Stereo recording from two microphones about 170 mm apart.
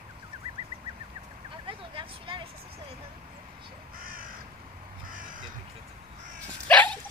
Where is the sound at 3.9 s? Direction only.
55° right (ahead or behind).